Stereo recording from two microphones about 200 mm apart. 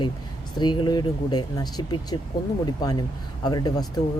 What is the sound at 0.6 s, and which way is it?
Speech, 20° left (ahead or behind).